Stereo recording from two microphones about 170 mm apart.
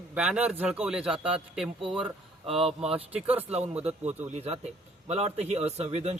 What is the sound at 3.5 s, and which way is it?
Speech, 40° right (ahead or behind).